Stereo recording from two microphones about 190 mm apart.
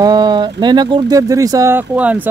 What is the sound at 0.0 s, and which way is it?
Speech, 20° right (ahead or behind).